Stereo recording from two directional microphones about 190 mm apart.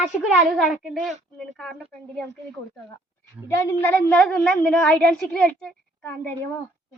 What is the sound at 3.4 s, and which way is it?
A child's voice, 15° left (ahead or behind).